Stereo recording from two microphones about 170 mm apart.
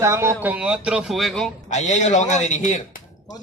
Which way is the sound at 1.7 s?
45° left (ahead or behind).